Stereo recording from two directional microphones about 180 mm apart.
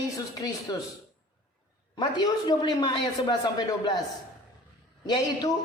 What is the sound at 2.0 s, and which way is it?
A woman's voice, 25° left (ahead or behind).